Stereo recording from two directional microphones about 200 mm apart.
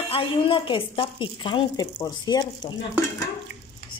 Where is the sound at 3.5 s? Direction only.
60° right (ahead or behind).